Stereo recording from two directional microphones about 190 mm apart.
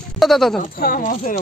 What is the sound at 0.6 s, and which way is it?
Speech, 50° left (ahead or behind).